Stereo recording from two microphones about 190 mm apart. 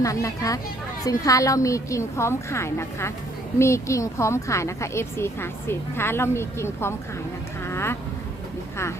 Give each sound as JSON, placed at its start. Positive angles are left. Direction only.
{"t": 0.0, "sound": "speech", "side_deg": 15}
{"t": 7.6, "sound": "insect", "side_deg": 15}